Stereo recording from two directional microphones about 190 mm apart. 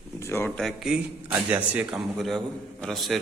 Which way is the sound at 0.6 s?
5° right (ahead or behind).